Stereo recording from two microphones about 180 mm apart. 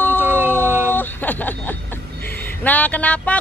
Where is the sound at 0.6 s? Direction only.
10° right (ahead or behind).